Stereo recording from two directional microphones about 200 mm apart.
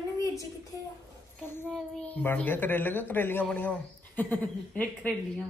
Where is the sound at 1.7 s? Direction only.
5° left (ahead or behind).